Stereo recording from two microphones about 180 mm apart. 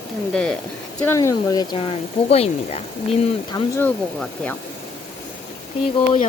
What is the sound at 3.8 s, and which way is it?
Speech, 10° left (ahead or behind).